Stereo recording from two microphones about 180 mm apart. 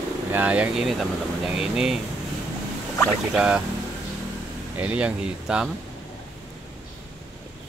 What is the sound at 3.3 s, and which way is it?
Speech, 5° right (ahead or behind).